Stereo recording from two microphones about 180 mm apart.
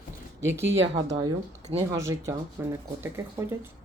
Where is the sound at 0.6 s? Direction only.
90° right.